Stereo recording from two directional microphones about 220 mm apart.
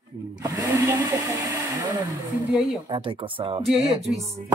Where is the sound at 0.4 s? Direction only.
15° right (ahead or behind).